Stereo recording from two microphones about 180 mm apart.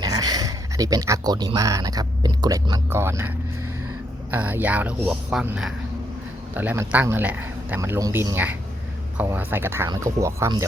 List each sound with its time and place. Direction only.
0.0 s speech: 20° right (ahead or behind)